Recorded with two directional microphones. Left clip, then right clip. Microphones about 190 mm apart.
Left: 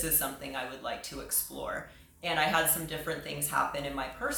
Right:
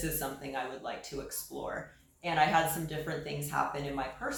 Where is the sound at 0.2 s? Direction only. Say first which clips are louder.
Left 1 dB; 25° left (ahead or behind).